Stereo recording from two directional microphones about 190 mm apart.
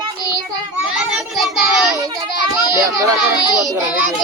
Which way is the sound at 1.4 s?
Centre (ahead or behind).